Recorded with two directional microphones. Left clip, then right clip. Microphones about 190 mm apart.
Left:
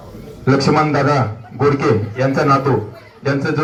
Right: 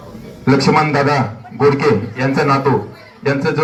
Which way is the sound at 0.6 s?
15° left (ahead or behind).